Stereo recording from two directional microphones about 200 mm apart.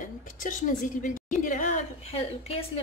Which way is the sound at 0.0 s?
40° left (ahead or behind).